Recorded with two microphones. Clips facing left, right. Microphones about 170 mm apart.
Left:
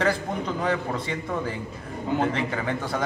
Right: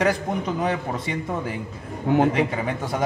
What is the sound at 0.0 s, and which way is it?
A man's voice, 15° right (ahead or behind).